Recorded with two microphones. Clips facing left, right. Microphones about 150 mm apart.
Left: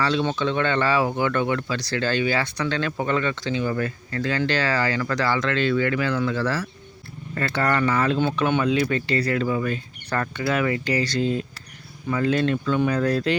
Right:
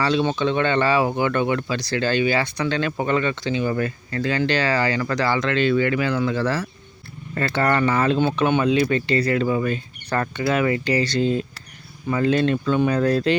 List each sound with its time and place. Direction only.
0.0 s speech: 15° right (ahead or behind)